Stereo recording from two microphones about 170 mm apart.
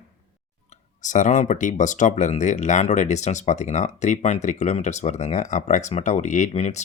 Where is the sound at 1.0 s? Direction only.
50° left (ahead or behind).